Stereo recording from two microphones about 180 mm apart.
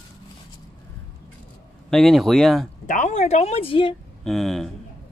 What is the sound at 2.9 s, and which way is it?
Speech, 45° left (ahead or behind).